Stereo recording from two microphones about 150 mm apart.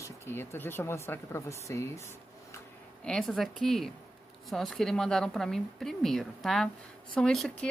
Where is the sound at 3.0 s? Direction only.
5° left (ahead or behind).